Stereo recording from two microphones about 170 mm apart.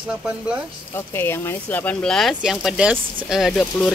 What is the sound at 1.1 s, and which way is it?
Speech, 15° left (ahead or behind).